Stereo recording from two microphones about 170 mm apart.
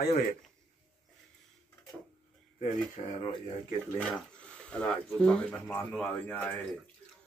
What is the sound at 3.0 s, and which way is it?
Speech, 35° left (ahead or behind).